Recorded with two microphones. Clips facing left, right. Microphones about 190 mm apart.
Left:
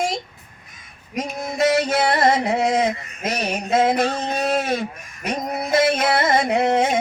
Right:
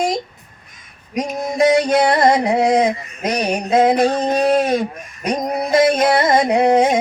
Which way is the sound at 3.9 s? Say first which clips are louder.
Right 5 dB; 10° right (ahead or behind).